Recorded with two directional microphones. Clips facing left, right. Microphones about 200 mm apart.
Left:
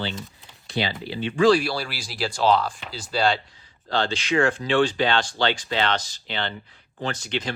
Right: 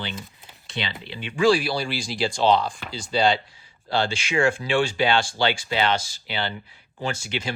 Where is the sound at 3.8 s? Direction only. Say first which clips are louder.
Left 1 dB; 10° right (ahead or behind).